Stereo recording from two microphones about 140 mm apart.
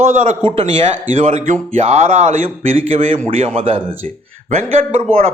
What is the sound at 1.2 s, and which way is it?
A man's voice, 50° right (ahead or behind).